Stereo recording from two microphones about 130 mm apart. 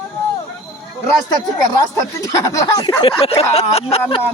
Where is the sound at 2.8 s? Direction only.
45° left (ahead or behind).